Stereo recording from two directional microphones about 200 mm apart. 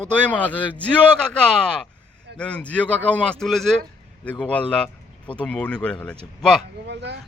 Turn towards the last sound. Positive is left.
turn(degrees=-60)  # may be behind; listen again after turning